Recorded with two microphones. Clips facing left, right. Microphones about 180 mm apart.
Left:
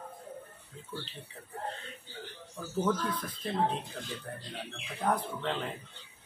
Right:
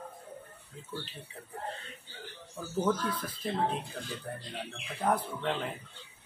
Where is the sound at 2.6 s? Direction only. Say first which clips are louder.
Right 1 dB; 15° right (ahead or behind).